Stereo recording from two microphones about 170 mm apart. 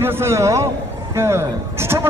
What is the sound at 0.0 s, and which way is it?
A man's voice, 15° right (ahead or behind).